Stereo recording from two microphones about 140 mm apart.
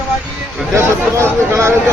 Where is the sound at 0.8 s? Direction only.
20° right (ahead or behind).